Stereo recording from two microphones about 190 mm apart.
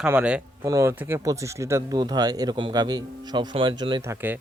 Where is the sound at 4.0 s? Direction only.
15° right (ahead or behind).